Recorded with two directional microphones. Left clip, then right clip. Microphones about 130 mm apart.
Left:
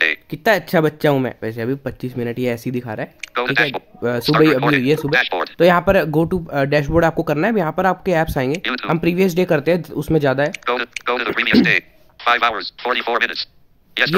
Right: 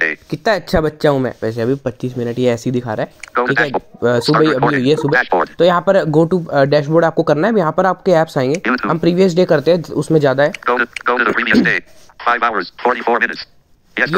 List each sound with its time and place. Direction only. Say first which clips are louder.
0.3 s speech: right 1 dB; centre (ahead or behind)
3.3 s speech: right 3 dB; 15° left (ahead or behind)
5.1 s speech: right 4 dB; 15° left (ahead or behind)
5.6 s speech: even; centre (ahead or behind)
8.5 s speech: right 5 dB; 10° left (ahead or behind)
9.1 s speech: right 4 dB; 45° left (ahead or behind)
9.4 s speech: right 4 dB; centre (ahead or behind)
10.5 s speech: right 5 dB; 15° left (ahead or behind)